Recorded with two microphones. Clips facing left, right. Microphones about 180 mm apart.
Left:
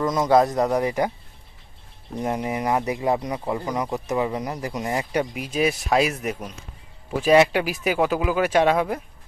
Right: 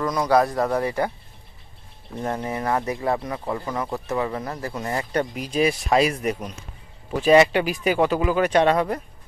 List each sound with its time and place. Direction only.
0.0 s speech: 20° left (ahead or behind)
2.1 s speech: 15° left (ahead or behind)
5.2 s speech: 5° left (ahead or behind)